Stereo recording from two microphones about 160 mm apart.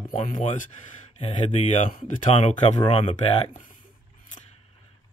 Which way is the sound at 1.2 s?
40° left (ahead or behind).